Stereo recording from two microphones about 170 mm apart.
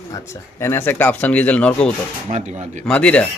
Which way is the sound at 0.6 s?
15° left (ahead or behind).